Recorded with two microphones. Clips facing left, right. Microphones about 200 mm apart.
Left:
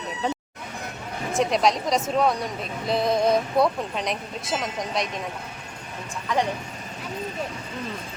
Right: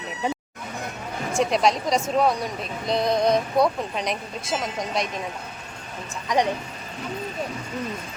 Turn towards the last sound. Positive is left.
turn(degrees=-15)  # may be behind; listen again after turning